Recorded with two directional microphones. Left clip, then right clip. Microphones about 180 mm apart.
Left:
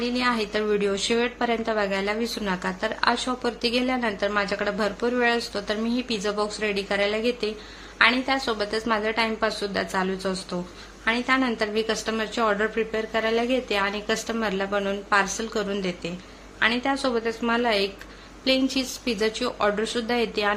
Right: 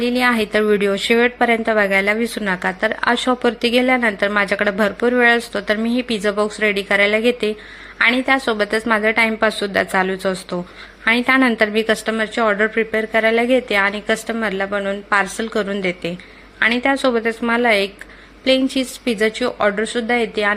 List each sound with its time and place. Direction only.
0.0 s a woman's voice: 25° right (ahead or behind)